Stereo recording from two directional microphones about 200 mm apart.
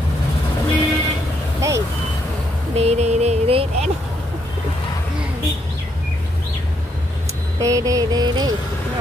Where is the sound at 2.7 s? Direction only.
30° right (ahead or behind).